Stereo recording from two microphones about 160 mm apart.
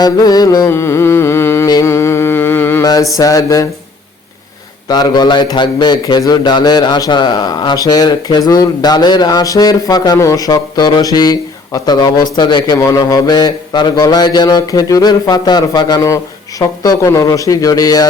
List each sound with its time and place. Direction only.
0.0 s music: 25° left (ahead or behind)
4.9 s a man's voice: 25° left (ahead or behind)